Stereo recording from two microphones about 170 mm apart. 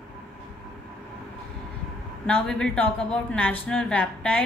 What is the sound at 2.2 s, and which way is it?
A woman's voice, 5° left (ahead or behind).